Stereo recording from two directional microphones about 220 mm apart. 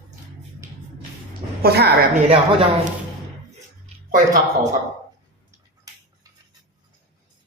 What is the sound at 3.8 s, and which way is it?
Speech, 35° right (ahead or behind).